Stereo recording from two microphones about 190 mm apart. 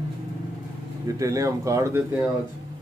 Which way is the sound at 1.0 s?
20° right (ahead or behind).